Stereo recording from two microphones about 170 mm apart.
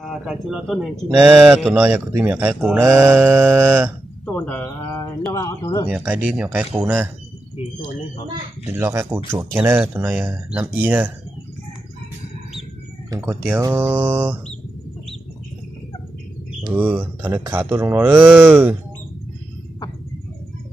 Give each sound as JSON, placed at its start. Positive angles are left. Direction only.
{"t": 0.0, "sound": "speech", "side_deg": -5}
{"t": 4.3, "sound": "a sound", "side_deg": 10}
{"t": 5.3, "sound": "speech", "side_deg": 20}
{"t": 5.9, "sound": "speech", "side_deg": -5}
{"t": 8.6, "sound": "speech", "side_deg": -15}
{"t": 13.1, "sound": "speech", "side_deg": -15}
{"t": 16.7, "sound": "speech", "side_deg": -10}